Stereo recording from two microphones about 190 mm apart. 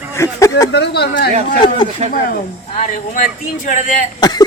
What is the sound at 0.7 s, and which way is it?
Speech, 60° left (ahead or behind).